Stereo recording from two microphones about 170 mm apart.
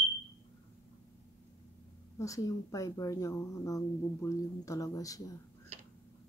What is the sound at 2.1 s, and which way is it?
Speech, 20° left (ahead or behind).